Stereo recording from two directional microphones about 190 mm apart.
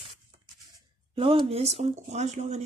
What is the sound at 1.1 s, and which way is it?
A woman's voice, 30° right (ahead or behind).